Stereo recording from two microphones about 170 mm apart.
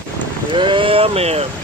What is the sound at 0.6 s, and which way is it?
Speech, 30° right (ahead or behind).